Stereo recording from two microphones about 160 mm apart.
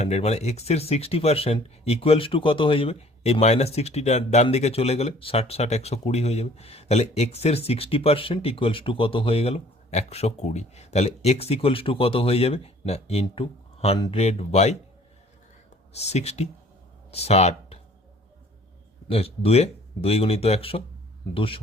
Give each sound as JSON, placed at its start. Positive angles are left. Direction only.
{"t": 0.0, "sound": "speech", "side_deg": 45}
{"t": 16.0, "sound": "speech", "side_deg": 40}
{"t": 19.0, "sound": "speech", "side_deg": 35}